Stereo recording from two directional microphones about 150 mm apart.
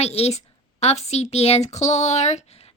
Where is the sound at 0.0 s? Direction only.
45° left (ahead or behind).